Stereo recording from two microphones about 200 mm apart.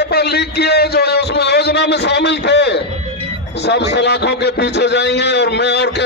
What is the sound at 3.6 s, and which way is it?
A man's voice, 60° left (ahead or behind).